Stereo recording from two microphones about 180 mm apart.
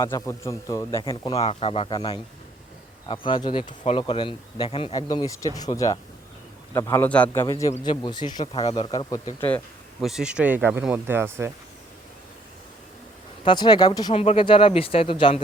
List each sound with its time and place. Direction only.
0.0 s a man's voice: 15° left (ahead or behind)
7.4 s speech: 20° left (ahead or behind)
10.0 s speech: 5° right (ahead or behind)
13.4 s speech: 25° left (ahead or behind)
14.1 s speech: 35° left (ahead or behind)